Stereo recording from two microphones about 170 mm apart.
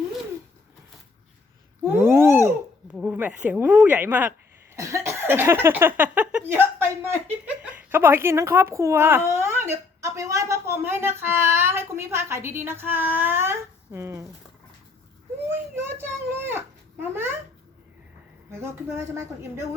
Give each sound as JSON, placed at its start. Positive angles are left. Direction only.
{"t": 1.8, "sound": "a sound", "side_deg": -15}
{"t": 2.9, "sound": "a woman's voice", "side_deg": -5}
{"t": 15.4, "sound": "a woman's voice", "side_deg": -15}
{"t": 18.5, "sound": "a woman's voice", "side_deg": -15}